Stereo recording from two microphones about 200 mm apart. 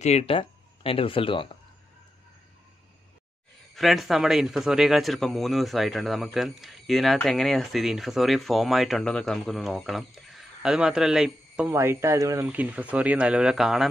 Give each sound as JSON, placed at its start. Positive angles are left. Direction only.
{"t": 0.0, "sound": "speech", "side_deg": 30}
{"t": 3.7, "sound": "a man's voice", "side_deg": 0}
{"t": 11.7, "sound": "speech", "side_deg": -15}